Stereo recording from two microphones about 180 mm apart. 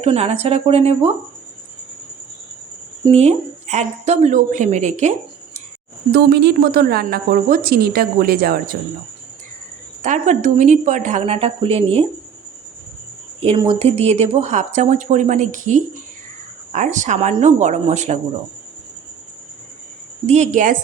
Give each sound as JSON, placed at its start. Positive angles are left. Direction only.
{"t": 0.0, "sound": "speech", "side_deg": -35}
{"t": 3.1, "sound": "speech", "side_deg": -35}
{"t": 6.1, "sound": "speech", "side_deg": -65}
{"t": 10.0, "sound": "speech", "side_deg": -45}
{"t": 13.4, "sound": "speech", "side_deg": -30}
{"t": 20.2, "sound": "speech", "side_deg": -40}